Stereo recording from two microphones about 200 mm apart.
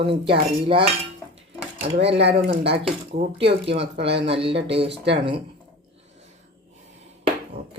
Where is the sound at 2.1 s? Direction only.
60° right (ahead or behind).